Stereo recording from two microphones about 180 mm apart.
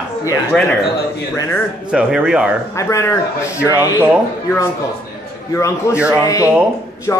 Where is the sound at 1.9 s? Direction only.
5° right (ahead or behind).